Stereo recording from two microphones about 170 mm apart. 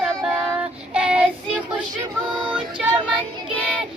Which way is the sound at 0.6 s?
5° right (ahead or behind).